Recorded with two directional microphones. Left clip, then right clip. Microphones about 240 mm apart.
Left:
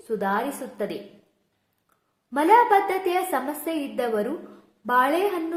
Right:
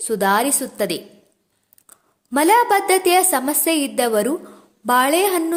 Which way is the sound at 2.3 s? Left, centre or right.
Right.